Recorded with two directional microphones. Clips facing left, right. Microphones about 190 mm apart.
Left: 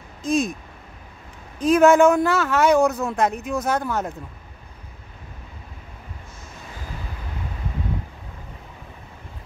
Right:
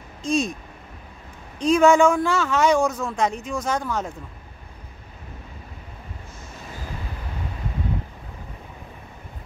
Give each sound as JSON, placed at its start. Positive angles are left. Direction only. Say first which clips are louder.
{"t": 0.2, "sound": "speech", "louder": "left 1 dB", "side_deg": 5}
{"t": 1.6, "sound": "speech", "louder": "left 2 dB", "side_deg": 5}